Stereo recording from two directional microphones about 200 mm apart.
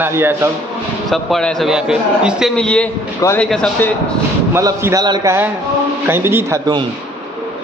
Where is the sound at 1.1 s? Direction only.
Centre (ahead or behind).